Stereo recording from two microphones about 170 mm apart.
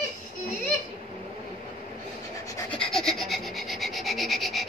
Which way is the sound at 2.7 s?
5° left (ahead or behind).